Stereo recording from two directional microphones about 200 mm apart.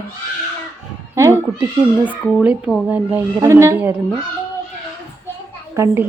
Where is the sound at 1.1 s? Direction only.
15° right (ahead or behind).